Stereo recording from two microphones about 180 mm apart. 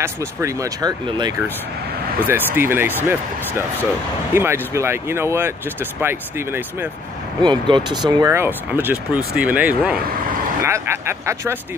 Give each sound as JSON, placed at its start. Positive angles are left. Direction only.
{"t": 0.0, "sound": "speech", "side_deg": -15}
{"t": 2.2, "sound": "speech", "side_deg": -10}
{"t": 4.3, "sound": "speech", "side_deg": -15}
{"t": 7.4, "sound": "speech", "side_deg": -25}